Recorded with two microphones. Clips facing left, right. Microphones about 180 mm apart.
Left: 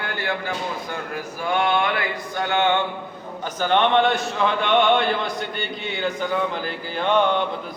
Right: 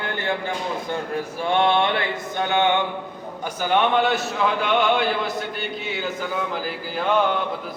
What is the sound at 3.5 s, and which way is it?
Speech, 10° right (ahead or behind).